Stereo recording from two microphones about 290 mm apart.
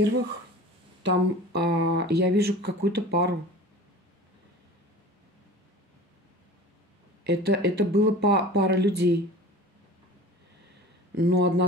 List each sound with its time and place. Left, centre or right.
1.0 s speech: right
7.2 s speech: right
11.1 s speech: right